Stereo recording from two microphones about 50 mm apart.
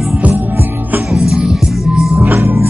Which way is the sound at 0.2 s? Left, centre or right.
Right.